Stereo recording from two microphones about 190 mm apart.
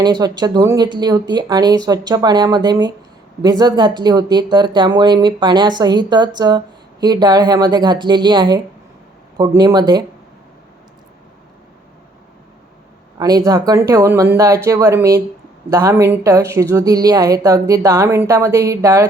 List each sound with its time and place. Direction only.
0.0 s speech: 20° right (ahead or behind)
13.1 s speech: 20° right (ahead or behind)